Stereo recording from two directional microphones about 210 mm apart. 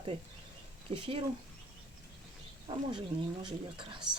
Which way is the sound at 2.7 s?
20° right (ahead or behind).